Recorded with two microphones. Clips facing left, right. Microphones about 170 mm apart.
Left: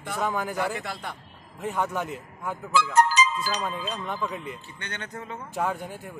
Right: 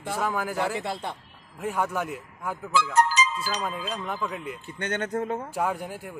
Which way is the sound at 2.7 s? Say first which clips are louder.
Left 1 dB; 60° left (ahead or behind).